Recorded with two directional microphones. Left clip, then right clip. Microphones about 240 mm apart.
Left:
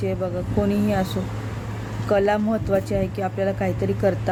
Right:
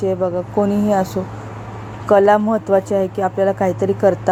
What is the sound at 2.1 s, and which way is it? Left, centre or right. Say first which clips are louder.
Speech: right 8 dB; centre.